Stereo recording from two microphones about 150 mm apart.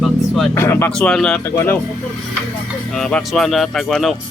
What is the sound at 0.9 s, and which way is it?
Speech, 5° left (ahead or behind).